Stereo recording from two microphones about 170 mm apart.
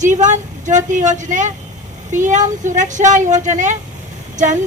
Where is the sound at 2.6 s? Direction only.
45° right (ahead or behind).